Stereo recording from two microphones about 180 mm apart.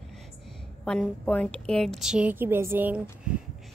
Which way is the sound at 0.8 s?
5° left (ahead or behind).